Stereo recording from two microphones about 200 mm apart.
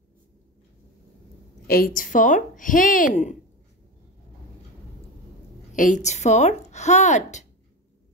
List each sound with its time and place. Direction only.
1.7 s speech: 45° left (ahead or behind)
5.8 s speech: 40° left (ahead or behind)